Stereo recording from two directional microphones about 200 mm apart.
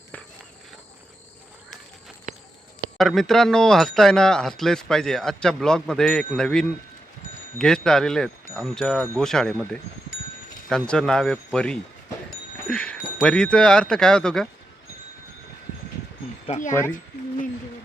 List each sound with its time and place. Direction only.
3.0 s speech: centre (ahead or behind)
10.7 s speech: 5° left (ahead or behind)
16.5 s speech: 40° left (ahead or behind)